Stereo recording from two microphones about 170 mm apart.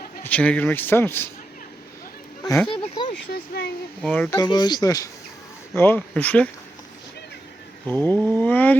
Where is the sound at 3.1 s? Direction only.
70° left (ahead or behind).